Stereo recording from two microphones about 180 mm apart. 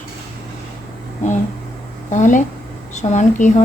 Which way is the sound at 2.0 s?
45° left (ahead or behind).